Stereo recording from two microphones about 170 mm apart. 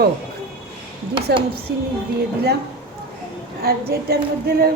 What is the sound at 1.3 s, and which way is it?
Speech, 70° right (ahead or behind).